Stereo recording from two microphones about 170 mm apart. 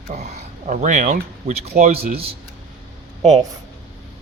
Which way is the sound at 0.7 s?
45° right (ahead or behind).